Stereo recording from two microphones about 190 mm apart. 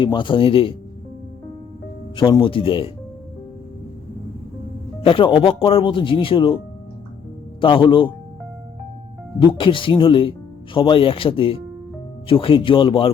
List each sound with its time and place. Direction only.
0.0 s speech: 25° left (ahead or behind)
2.1 s speech: 25° left (ahead or behind)
5.0 s speech: 25° left (ahead or behind)
7.6 s speech: 25° left (ahead or behind)
9.4 s speech: 25° left (ahead or behind)